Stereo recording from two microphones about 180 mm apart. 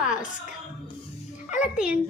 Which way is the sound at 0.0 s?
5° right (ahead or behind).